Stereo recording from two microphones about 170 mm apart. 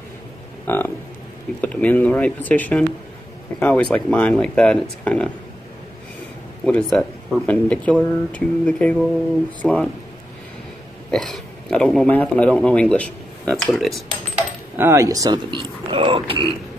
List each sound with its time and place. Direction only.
0.7 s speech: 10° left (ahead or behind)
6.6 s speech: 5° left (ahead or behind)
11.1 s speech: centre (ahead or behind)
14.8 s speech: 15° right (ahead or behind)